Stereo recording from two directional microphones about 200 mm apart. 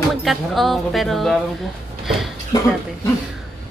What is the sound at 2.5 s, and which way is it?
Speech, 20° left (ahead or behind).